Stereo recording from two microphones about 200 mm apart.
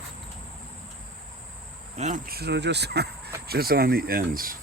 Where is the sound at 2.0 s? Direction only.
40° right (ahead or behind); by 3.3 s 55° right (ahead or behind).